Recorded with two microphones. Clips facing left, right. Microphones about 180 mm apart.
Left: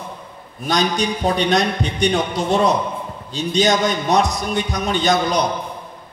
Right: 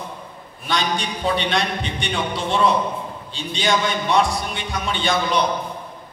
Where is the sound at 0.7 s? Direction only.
40° left (ahead or behind).